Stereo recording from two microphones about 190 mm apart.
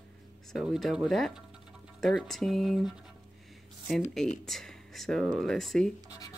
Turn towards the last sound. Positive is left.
turn(degrees=0)  # may be behind; listen again after turning